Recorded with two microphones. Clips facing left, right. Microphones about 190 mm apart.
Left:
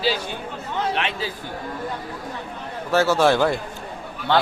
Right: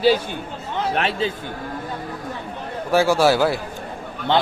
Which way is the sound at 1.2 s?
25° right (ahead or behind).